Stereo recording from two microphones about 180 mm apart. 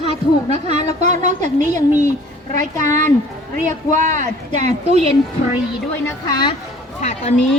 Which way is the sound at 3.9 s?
45° right (ahead or behind).